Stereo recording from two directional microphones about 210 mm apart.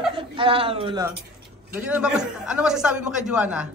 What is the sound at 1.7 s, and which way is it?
A man's voice, 5° right (ahead or behind).